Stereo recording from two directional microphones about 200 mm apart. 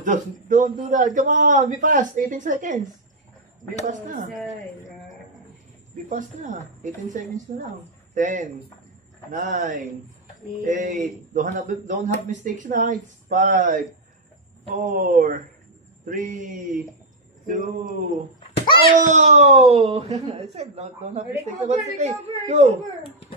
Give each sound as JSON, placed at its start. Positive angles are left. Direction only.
{"t": 0.0, "sound": "a man's voice", "side_deg": -40}
{"t": 3.8, "sound": "a man's voice", "side_deg": -40}
{"t": 6.0, "sound": "a man's voice", "side_deg": -40}